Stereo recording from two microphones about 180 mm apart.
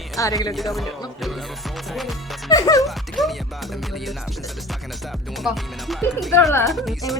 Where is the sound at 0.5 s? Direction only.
Centre (ahead or behind).